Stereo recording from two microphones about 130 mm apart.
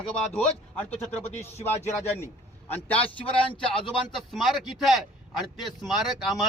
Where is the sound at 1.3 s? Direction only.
55° left (ahead or behind).